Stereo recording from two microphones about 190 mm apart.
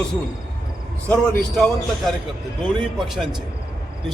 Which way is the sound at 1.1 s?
Centre (ahead or behind).